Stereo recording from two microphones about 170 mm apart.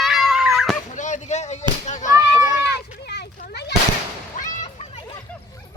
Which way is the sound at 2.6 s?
75° left (ahead or behind).